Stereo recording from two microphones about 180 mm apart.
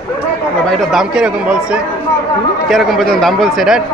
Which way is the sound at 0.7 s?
Centre (ahead or behind).